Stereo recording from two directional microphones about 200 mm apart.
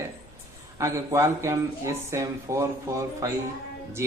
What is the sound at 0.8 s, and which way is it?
A man's voice, 15° right (ahead or behind).